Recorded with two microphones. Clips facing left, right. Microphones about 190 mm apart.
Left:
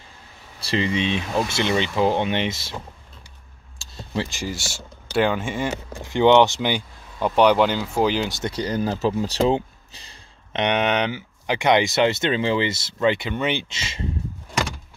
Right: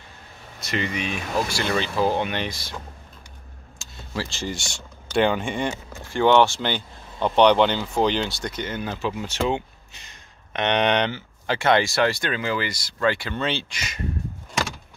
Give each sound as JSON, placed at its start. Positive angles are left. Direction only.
{"t": 0.6, "sound": "speech", "side_deg": 30}
{"t": 3.7, "sound": "a sound", "side_deg": 30}
{"t": 4.5, "sound": "speech", "side_deg": 5}
{"t": 6.0, "sound": "speech", "side_deg": 20}
{"t": 8.3, "sound": "speech", "side_deg": 20}
{"t": 8.5, "sound": "speech", "side_deg": 35}
{"t": 10.6, "sound": "speech", "side_deg": 5}